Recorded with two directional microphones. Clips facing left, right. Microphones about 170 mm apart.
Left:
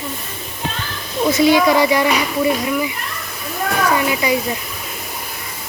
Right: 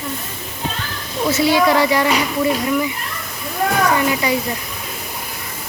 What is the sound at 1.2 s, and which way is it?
Speech, 15° left (ahead or behind).